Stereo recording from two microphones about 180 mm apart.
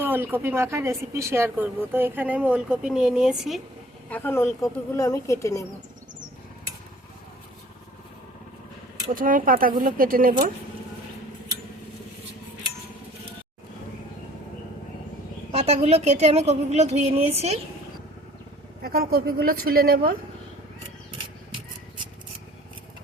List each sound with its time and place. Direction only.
0.0 s speech: 10° right (ahead or behind)
4.1 s speech: 10° left (ahead or behind)
9.1 s speech: 50° right (ahead or behind)
15.5 s a woman's voice: 35° right (ahead or behind)
18.8 s a woman's voice: 55° right (ahead or behind)